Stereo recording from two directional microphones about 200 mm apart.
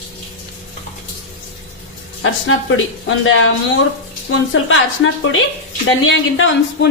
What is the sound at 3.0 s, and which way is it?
Speech, 80° left.